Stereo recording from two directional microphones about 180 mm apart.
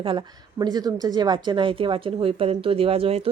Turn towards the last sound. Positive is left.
turn(degrees=-30)  # may be behind; listen again after turning